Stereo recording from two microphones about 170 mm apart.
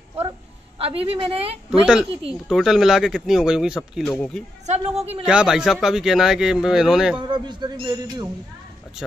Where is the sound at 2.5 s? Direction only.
Centre (ahead or behind).